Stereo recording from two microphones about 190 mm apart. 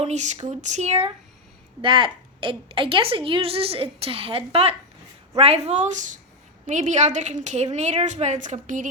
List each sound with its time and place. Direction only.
0.0 s a woman's voice: 35° right (ahead or behind)